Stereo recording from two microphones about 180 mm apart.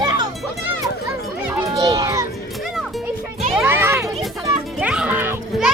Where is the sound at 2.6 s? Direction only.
Centre (ahead or behind).